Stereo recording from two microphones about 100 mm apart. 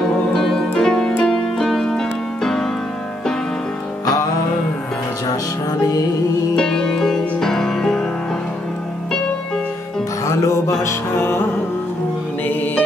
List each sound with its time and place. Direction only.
0.3 s music: 5° left (ahead or behind)
6.5 s music: 5° left (ahead or behind)
10.2 s music: 30° left (ahead or behind)
12.4 s music: 20° left (ahead or behind)